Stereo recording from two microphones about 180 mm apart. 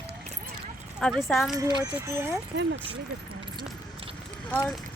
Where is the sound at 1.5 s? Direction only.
20° right (ahead or behind).